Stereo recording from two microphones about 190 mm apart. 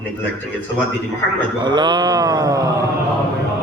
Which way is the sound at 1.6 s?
25° right (ahead or behind).